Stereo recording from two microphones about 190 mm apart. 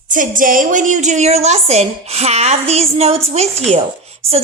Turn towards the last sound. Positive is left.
turn(degrees=-30)  # may be behind; listen again after turning